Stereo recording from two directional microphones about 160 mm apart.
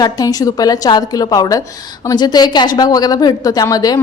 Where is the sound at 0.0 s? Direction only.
25° left (ahead or behind).